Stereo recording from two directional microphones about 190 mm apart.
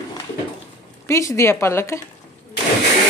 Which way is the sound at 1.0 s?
15° left (ahead or behind).